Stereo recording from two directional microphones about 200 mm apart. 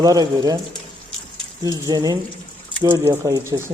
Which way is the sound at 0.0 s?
20° right (ahead or behind).